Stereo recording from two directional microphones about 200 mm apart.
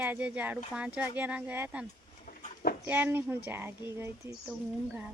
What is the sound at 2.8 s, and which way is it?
Speech, 10° right (ahead or behind).